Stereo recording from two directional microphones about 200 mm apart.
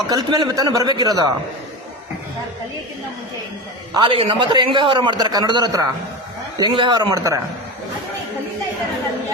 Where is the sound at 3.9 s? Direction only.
25° right (ahead or behind).